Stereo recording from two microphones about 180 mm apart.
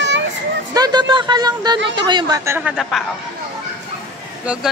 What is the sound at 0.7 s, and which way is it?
A woman's voice, 25° right (ahead or behind).